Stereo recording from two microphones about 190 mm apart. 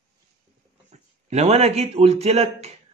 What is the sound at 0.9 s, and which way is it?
Speech, 35° right (ahead or behind).